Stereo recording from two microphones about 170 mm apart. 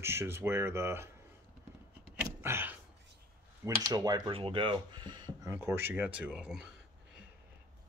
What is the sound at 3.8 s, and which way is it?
Speech, 20° right (ahead or behind).